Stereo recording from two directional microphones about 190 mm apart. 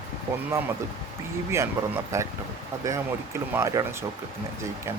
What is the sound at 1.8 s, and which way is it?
Speech, 15° right (ahead or behind).